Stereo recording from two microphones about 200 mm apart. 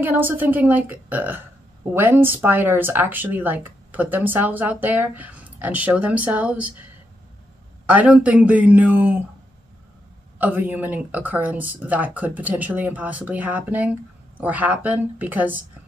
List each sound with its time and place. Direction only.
0.0 s speech: 10° right (ahead or behind)
7.9 s speech: 5° right (ahead or behind)
10.4 s speech: 10° right (ahead or behind)